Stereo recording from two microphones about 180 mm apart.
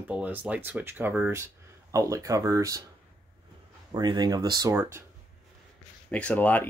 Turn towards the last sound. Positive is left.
turn(degrees=10)  # may be behind; listen again after turning